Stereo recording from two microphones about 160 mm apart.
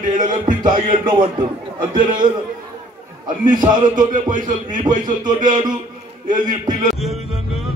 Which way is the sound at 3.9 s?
55° right (ahead or behind).